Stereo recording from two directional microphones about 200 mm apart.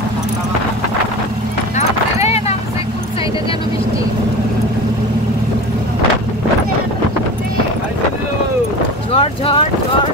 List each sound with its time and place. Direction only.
2.1 s vehicle: 30° left (ahead or behind)
9.1 s boat: 30° left (ahead or behind)